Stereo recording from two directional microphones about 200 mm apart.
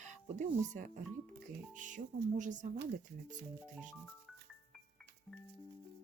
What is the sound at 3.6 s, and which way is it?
Music, 5° right (ahead or behind).